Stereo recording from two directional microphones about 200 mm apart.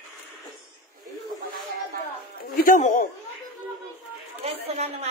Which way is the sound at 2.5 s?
40° left (ahead or behind).